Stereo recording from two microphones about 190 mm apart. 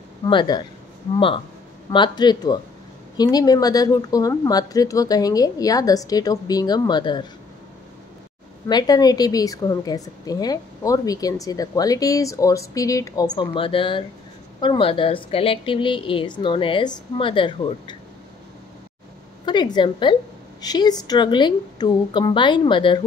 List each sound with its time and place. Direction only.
0.2 s a woman's voice: 25° left (ahead or behind)
8.6 s a woman's voice: 20° left (ahead or behind)
19.4 s a woman's voice: 25° left (ahead or behind)